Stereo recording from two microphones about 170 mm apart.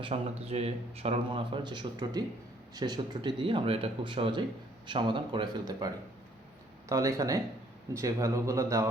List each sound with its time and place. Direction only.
0.0 s a man's voice: 35° right (ahead or behind); by 8.9 s 20° right (ahead or behind)